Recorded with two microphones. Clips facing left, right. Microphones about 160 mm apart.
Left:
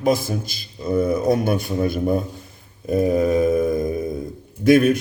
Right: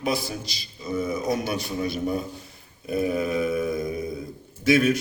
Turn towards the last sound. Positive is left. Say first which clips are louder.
# left 6 dB
turn(degrees=50)  # may be behind; listen again after turning